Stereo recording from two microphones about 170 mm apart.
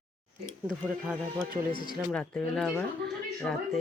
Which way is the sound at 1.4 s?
30° right (ahead or behind).